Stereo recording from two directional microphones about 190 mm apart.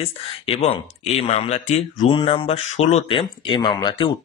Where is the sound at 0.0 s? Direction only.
30° left (ahead or behind).